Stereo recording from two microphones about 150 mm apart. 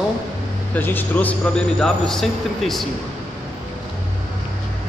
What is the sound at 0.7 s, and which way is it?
Speech, 10° left (ahead or behind).